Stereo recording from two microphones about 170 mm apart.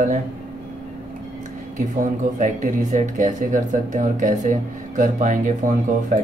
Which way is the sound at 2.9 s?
50° right (ahead or behind).